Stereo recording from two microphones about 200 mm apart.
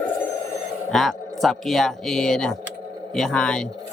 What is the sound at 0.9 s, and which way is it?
Speech, centre (ahead or behind).